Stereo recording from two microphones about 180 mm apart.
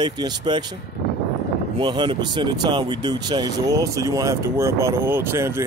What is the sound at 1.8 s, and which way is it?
Speech, 25° right (ahead or behind).